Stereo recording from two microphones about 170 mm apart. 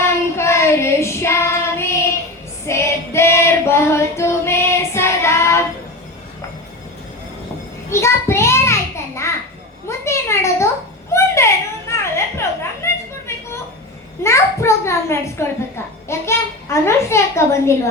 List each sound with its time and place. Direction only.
0.0 s child singing: 15° left (ahead or behind)
2.6 s female singing: 15° left (ahead or behind)
7.9 s a sound: 15° left (ahead or behind)
16.0 s a woman's voice: 15° left (ahead or behind)